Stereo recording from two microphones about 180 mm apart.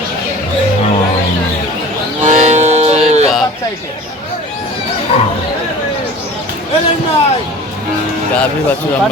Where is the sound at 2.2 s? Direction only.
40° right (ahead or behind).